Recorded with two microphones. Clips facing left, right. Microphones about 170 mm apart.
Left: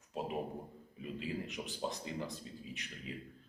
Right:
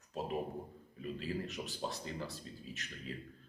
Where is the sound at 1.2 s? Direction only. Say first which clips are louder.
Even; 15° left (ahead or behind).